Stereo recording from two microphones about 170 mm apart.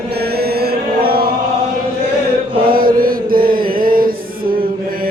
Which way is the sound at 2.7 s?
55° right (ahead or behind).